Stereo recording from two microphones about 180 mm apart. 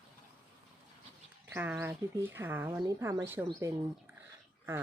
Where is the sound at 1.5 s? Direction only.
10° right (ahead or behind).